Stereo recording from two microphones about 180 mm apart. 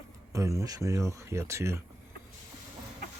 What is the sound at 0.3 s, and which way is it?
Speech, 15° right (ahead or behind).